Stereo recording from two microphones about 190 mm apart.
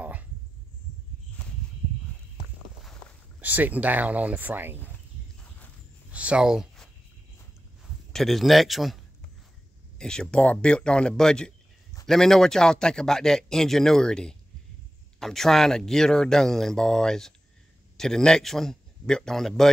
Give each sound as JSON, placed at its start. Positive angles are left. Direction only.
{"t": 3.3, "sound": "speech", "side_deg": -10}
{"t": 6.1, "sound": "a sound", "side_deg": -5}
{"t": 8.1, "sound": "a man's voice", "side_deg": 0}